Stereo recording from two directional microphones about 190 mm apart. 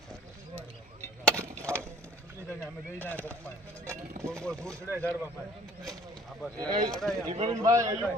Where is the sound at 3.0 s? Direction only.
10° left (ahead or behind).